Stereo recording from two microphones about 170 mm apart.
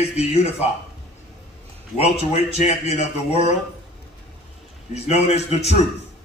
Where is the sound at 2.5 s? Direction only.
40° left (ahead or behind).